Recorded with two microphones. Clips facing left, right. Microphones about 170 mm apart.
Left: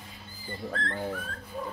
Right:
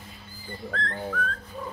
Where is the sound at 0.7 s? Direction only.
15° left (ahead or behind).